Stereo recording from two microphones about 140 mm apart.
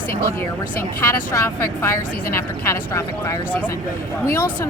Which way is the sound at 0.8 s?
20° left (ahead or behind).